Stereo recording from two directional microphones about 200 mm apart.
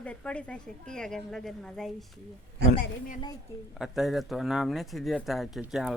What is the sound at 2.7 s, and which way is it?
Speech, 45° left (ahead or behind).